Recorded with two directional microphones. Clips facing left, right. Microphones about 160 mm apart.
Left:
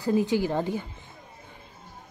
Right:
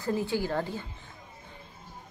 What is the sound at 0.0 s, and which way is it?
Speech, 15° left (ahead or behind).